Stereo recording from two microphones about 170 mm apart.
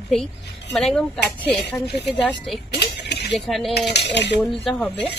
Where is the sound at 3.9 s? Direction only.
80° left.